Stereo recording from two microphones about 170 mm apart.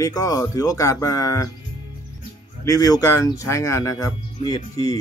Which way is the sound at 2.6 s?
20° left (ahead or behind).